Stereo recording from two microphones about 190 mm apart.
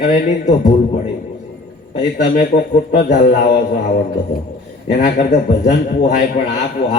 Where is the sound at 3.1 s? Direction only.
40° left (ahead or behind).